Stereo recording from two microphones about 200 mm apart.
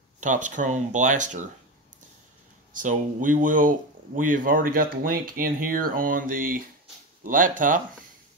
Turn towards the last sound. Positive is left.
turn(degrees=-40)  # may be behind; listen again after turning